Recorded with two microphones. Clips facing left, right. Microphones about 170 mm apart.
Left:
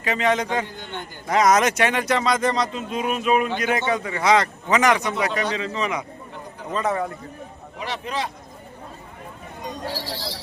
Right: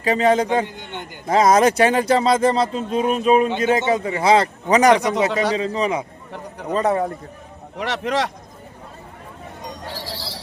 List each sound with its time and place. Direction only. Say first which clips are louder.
0.0 s a man's voice: right 5 dB; 35° right (ahead or behind)
0.5 s a man's voice: right 5 dB; 20° right (ahead or behind)
7.8 s speech: right 6 dB; 75° right (ahead or behind)